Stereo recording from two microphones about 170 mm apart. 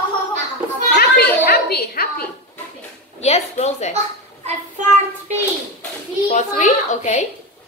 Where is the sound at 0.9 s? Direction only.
70° left (ahead or behind).